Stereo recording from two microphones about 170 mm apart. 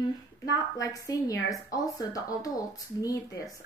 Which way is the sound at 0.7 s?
20° left (ahead or behind).